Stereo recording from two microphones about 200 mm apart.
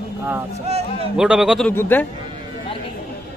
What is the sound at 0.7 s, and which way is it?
Speech, 30° right (ahead or behind).